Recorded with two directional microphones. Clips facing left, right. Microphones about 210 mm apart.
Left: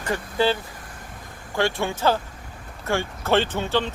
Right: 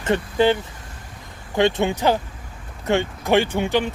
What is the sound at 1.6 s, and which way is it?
Speech, 20° right (ahead or behind).